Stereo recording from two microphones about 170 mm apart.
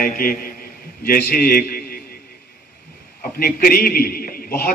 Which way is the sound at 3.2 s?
55° left (ahead or behind).